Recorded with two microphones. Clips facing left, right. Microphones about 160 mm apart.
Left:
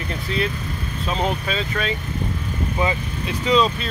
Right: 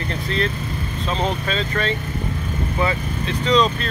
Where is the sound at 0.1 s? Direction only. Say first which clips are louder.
Even; 5° left (ahead or behind).